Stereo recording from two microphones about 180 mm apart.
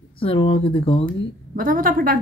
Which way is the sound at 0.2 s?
30° left (ahead or behind).